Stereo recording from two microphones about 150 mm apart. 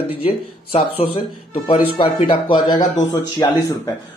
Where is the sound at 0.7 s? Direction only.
35° left (ahead or behind).